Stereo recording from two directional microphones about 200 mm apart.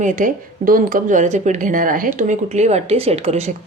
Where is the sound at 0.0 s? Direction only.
40° right (ahead or behind).